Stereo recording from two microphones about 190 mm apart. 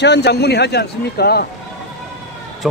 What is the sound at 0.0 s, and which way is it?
A man's voice, 65° left (ahead or behind).